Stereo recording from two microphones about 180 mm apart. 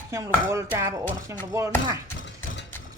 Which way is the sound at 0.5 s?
15° right (ahead or behind).